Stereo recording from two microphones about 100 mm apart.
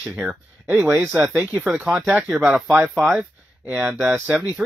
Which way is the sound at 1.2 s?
10° right (ahead or behind).